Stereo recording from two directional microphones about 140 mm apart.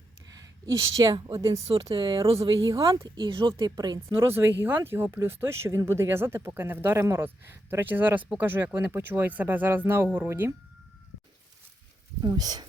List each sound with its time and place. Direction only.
0.3 s speech: 25° right (ahead or behind)
1.7 s speech: 35° right (ahead or behind)
2.6 s speech: 25° right (ahead or behind)
4.4 s speech: 15° right (ahead or behind)
12.2 s speech: 30° right (ahead or behind)